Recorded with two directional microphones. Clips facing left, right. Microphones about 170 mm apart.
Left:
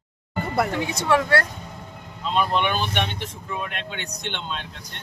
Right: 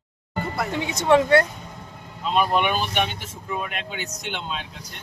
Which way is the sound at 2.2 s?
10° right (ahead or behind).